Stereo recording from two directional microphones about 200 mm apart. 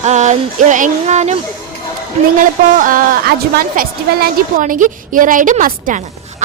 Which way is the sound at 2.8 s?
45° right (ahead or behind).